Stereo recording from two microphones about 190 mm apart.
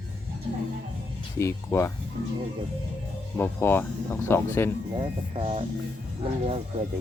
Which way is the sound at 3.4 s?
10° left (ahead or behind).